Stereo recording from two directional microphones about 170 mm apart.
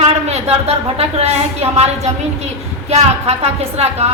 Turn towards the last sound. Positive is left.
turn(degrees=-40)  # may be behind; listen again after turning